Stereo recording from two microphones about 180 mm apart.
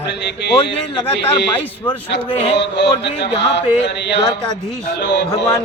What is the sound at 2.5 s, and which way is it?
Mantra, 75° left (ahead or behind).